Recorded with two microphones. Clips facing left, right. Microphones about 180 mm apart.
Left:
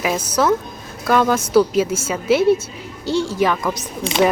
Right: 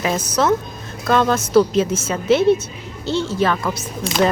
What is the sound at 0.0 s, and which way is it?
Speech, 10° left (ahead or behind).